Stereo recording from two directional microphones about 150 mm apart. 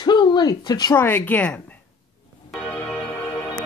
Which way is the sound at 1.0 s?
15° left (ahead or behind).